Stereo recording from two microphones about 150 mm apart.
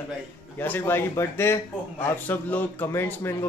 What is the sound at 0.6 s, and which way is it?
A man's voice, 15° left (ahead or behind).